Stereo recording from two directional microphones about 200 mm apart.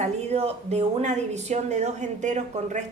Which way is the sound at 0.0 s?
30° right (ahead or behind).